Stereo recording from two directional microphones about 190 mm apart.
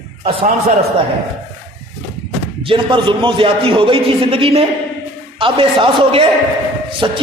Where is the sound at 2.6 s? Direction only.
25° right (ahead or behind).